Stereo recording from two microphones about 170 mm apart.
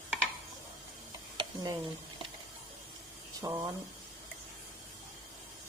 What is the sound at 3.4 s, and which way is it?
Speech, 20° right (ahead or behind).